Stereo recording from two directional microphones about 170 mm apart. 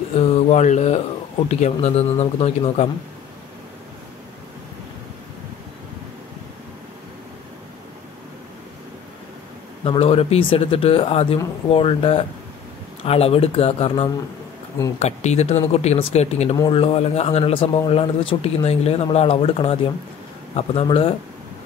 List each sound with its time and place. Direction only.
0.2 s speech: 40° left (ahead or behind)
9.8 s speech: 35° left (ahead or behind)
20.8 s speech: 30° left (ahead or behind)